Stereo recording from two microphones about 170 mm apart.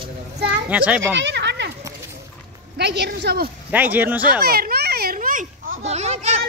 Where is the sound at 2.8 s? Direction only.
80° right.